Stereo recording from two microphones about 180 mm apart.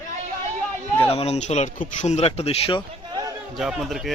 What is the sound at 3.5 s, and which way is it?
Speech, centre (ahead or behind).